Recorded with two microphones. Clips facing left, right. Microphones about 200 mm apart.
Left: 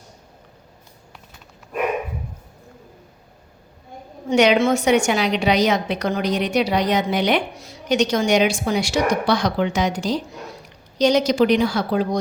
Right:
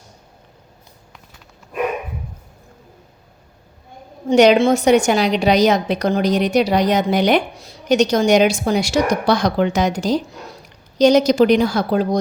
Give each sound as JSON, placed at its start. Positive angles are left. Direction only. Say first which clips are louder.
{"t": 4.3, "sound": "a woman's voice", "louder": "right 4 dB", "side_deg": -35}